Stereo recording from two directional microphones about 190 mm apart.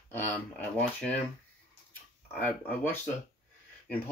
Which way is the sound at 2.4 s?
10° left (ahead or behind).